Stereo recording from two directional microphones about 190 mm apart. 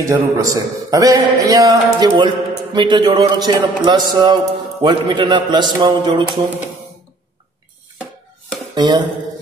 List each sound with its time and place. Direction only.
0.0 s a man's voice: 20° right (ahead or behind)
8.7 s speech: 25° right (ahead or behind)